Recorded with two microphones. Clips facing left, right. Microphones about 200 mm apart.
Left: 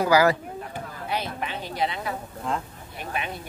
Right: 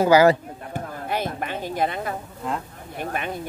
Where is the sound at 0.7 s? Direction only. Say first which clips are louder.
Right 4 dB; 50° right (ahead or behind).